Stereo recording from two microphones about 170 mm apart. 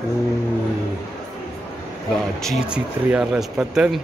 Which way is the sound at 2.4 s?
5° right (ahead or behind).